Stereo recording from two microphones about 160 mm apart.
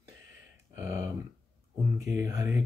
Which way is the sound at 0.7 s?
15° right (ahead or behind).